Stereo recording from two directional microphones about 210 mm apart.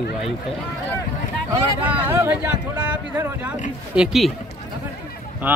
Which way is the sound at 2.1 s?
10° right (ahead or behind).